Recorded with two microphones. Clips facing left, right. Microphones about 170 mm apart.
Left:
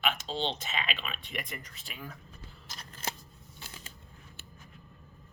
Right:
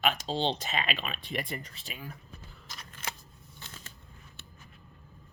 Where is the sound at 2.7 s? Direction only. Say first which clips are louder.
Left 2 dB; 35° left (ahead or behind).